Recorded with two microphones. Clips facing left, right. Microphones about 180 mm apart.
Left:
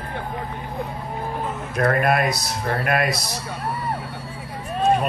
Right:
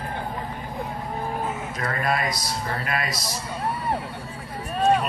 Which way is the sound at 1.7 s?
60° left (ahead or behind).